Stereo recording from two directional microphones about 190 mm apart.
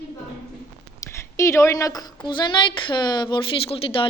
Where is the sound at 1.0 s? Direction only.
15° left (ahead or behind).